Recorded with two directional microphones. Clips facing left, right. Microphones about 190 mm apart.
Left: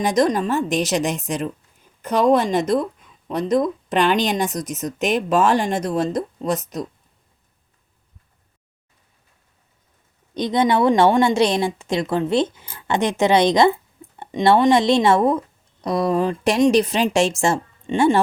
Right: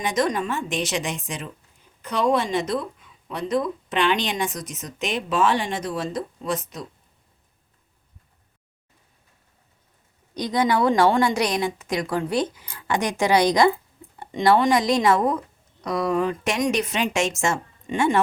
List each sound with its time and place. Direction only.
0.0 s speech: 35° left (ahead or behind)
10.3 s speech: 25° left (ahead or behind)